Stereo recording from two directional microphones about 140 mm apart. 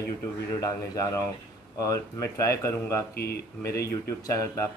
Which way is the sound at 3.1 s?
90° left.